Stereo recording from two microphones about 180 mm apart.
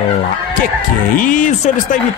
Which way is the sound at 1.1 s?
45° left (ahead or behind).